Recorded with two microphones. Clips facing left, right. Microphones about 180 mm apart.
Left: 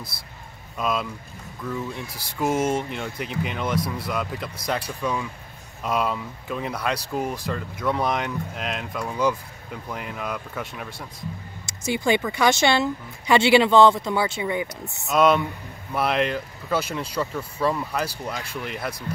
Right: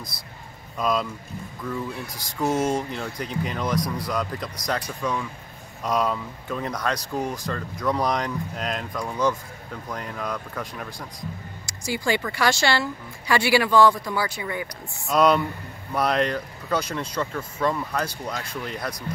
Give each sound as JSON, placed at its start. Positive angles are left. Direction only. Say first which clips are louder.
{"t": 0.7, "sound": "speech", "louder": "right 2 dB", "side_deg": 5}
{"t": 2.0, "sound": "a woman's voice", "louder": "right 1 dB", "side_deg": 30}
{"t": 2.4, "sound": "speech", "louder": "even", "side_deg": 5}
{"t": 11.1, "sound": "a sound", "louder": "even", "side_deg": 20}
{"t": 12.3, "sound": "a woman's voice", "louder": "left 1 dB", "side_deg": 20}
{"t": 15.0, "sound": "speech", "louder": "even", "side_deg": 0}